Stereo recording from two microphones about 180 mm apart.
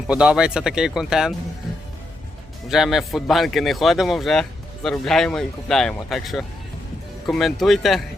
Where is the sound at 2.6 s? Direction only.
Centre (ahead or behind).